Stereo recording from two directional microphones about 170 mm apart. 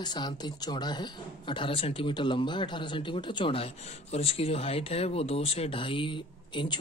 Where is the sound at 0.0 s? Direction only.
25° left (ahead or behind).